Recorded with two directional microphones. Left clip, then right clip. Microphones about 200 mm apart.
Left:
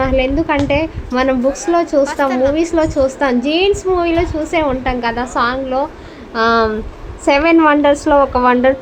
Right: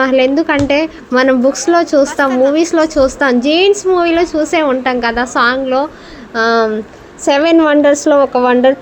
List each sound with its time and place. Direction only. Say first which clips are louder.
0.0 s a woman's voice: right 4 dB; 25° right (ahead or behind)
2.3 s a woman's voice: right 3 dB; 5° left (ahead or behind)
2.6 s a woman's voice: right 3 dB; 20° right (ahead or behind)
6.3 s a woman's voice: right 1 dB; 10° right (ahead or behind)